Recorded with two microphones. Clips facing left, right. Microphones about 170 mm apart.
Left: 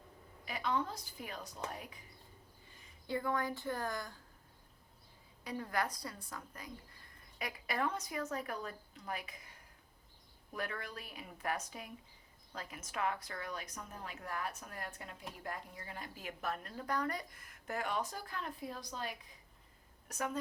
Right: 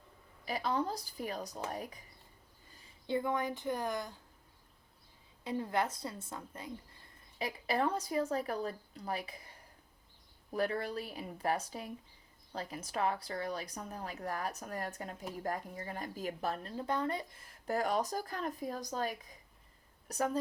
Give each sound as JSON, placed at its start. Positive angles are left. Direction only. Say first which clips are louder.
{"t": 0.4, "sound": "speech", "louder": "right 3 dB", "side_deg": -35}
{"t": 2.6, "sound": "a sound", "louder": "even", "side_deg": -35}
{"t": 3.1, "sound": "a woman's voice", "louder": "right 3 dB", "side_deg": -20}
{"t": 5.4, "sound": "a woman's voice", "louder": "right 4 dB", "side_deg": -25}
{"t": 10.5, "sound": "speech", "louder": "right 8 dB", "side_deg": -35}